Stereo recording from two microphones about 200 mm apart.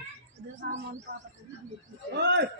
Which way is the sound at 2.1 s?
60° right (ahead or behind).